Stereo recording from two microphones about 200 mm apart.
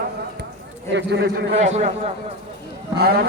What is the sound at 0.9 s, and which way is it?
Speech, 60° right (ahead or behind).